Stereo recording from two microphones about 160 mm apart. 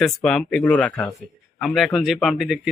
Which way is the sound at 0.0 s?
5° left (ahead or behind).